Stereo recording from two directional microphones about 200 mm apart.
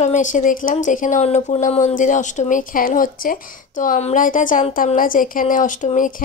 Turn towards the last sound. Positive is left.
turn(degrees=40)  # may be behind; listen again after turning